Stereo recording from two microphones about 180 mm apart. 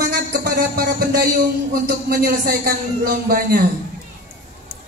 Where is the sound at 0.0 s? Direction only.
60° right (ahead or behind).